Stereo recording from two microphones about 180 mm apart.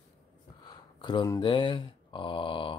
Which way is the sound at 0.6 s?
25° left (ahead or behind).